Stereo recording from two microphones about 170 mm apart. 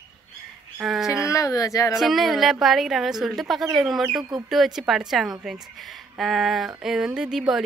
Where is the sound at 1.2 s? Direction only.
20° left (ahead or behind).